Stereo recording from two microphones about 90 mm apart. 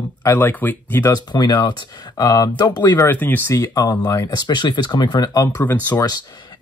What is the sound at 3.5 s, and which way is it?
Speech, 40° left (ahead or behind).